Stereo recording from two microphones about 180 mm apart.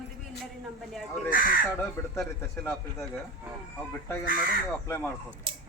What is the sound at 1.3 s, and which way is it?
Speech, 50° left (ahead or behind).